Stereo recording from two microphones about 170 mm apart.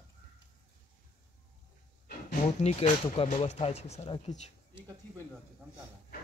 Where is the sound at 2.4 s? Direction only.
40° left (ahead or behind).